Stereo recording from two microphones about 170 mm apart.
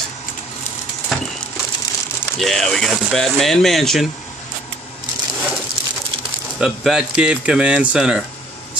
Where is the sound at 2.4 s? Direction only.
Centre (ahead or behind).